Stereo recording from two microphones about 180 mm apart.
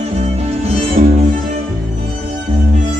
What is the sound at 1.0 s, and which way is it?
Music, 40° right (ahead or behind).